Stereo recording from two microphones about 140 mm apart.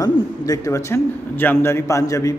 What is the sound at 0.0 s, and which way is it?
A man's voice, 25° left (ahead or behind).